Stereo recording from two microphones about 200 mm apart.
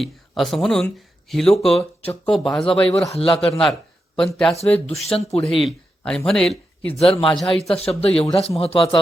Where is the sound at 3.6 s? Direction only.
Centre (ahead or behind).